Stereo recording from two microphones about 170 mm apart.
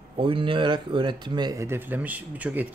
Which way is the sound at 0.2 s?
30° right (ahead or behind).